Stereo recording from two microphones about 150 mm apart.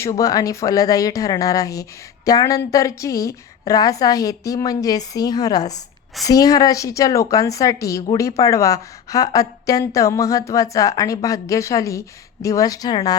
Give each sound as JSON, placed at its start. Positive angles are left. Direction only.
{"t": 0.0, "sound": "a woman's voice", "side_deg": 20}